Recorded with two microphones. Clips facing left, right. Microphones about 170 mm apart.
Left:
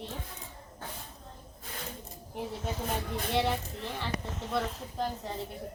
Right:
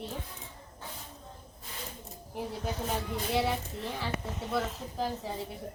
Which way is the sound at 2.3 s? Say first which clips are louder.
Even; centre (ahead or behind).